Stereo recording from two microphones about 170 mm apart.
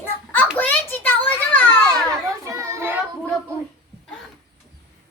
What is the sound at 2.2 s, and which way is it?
Children playing, 20° right (ahead or behind).